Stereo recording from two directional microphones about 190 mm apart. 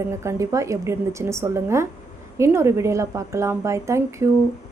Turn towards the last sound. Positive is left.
turn(degrees=-15)  # may be behind; listen again after turning